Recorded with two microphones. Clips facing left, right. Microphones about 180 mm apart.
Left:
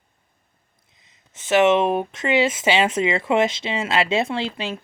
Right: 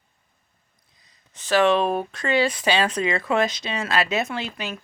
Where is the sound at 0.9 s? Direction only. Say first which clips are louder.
Left 1 dB; 20° left (ahead or behind).